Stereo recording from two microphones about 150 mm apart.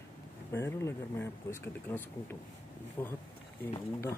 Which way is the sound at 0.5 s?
15° left (ahead or behind).